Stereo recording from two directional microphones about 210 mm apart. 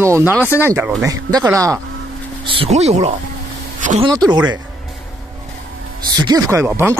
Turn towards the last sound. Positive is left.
turn(degrees=-10)  # may be behind; listen again after turning